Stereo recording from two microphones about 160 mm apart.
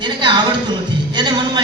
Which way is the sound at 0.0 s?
30° right (ahead or behind).